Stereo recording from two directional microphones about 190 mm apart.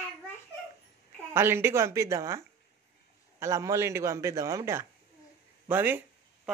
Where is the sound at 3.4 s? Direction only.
15° right (ahead or behind).